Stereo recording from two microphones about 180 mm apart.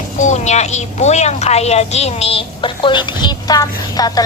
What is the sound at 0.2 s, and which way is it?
A woman's voice, 40° left (ahead or behind).